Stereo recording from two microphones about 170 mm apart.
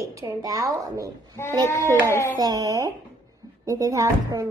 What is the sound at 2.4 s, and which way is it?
A woman's voice, 20° right (ahead or behind).